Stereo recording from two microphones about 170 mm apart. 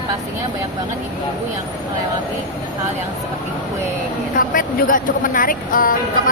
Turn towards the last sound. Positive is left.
turn(degrees=55)  # may be behind; listen again after turning